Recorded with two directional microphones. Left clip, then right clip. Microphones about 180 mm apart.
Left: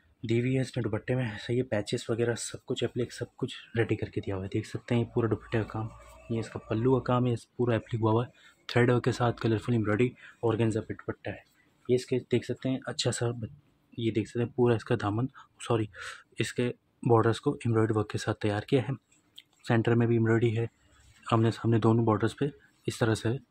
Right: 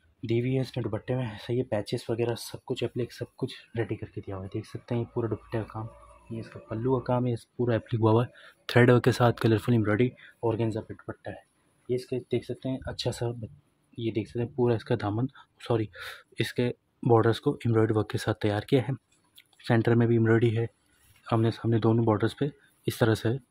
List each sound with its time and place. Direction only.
0.2 s speech: 10° right (ahead or behind)
3.7 s speech: 20° left (ahead or behind)
7.0 s speech: centre (ahead or behind); by 9.8 s 35° right (ahead or behind)
9.8 s speech: 20° right (ahead or behind)
10.4 s speech: centre (ahead or behind)
10.9 s speech: 10° left (ahead or behind); by 23.4 s 20° right (ahead or behind)